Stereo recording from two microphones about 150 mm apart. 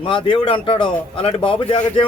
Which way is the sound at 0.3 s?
35° left (ahead or behind).